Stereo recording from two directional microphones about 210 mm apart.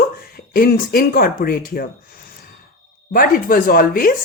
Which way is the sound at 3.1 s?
45° left (ahead or behind).